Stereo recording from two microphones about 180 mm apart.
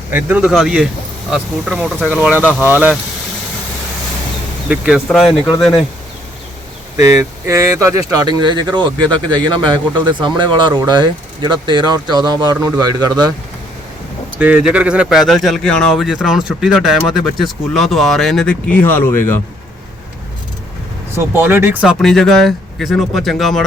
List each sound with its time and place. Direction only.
0.1 s speech: 10° right (ahead or behind)
4.7 s speech: 5° right (ahead or behind)
7.0 s speech: 15° right (ahead or behind)
14.3 s speech: 5° right (ahead or behind); by 19.4 s 15° left (ahead or behind)
21.2 s speech: 15° right (ahead or behind)
21.9 s speech: centre (ahead or behind)